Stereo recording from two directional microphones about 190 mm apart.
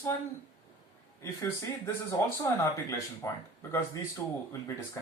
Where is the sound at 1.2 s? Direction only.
15° left (ahead or behind).